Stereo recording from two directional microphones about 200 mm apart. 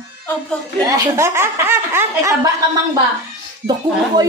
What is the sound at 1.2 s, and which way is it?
Laughter, 10° right (ahead or behind).